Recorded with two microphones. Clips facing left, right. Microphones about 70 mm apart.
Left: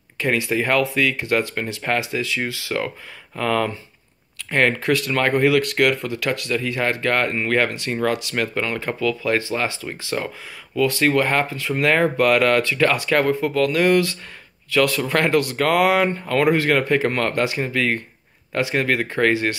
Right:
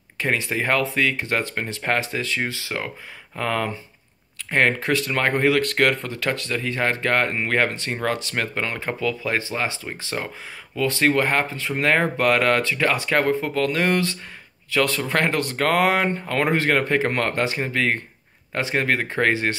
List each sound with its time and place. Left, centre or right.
0.2 s speech: right